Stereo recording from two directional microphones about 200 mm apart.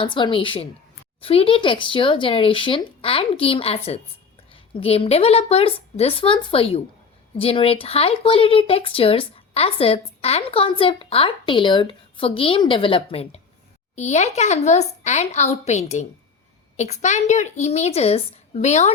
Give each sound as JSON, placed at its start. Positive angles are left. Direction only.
{"t": 0.0, "sound": "a woman's voice", "side_deg": 25}